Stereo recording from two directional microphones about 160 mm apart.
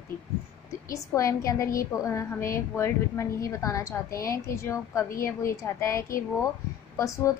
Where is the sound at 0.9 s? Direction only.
20° left (ahead or behind).